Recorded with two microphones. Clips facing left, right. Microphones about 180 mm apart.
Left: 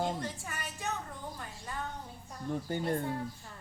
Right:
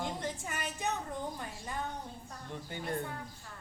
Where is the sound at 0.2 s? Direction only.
20° right (ahead or behind).